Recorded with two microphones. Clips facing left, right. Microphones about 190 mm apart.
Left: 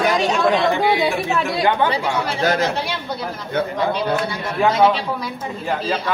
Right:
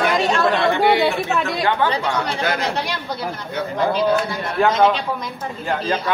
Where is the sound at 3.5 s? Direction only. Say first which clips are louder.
Left 5 dB; 55° left (ahead or behind).